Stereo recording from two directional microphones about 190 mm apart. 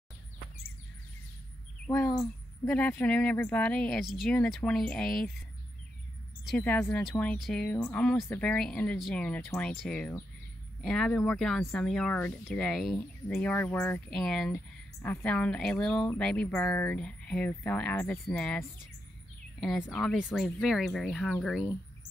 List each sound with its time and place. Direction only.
1.9 s speech: 15° left (ahead or behind); by 5.3 s centre (ahead or behind)
6.4 s speech: 5° left (ahead or behind)
19.9 s speech: centre (ahead or behind)